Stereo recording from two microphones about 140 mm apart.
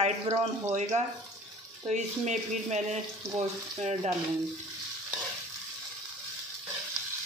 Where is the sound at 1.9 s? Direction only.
55° right (ahead or behind).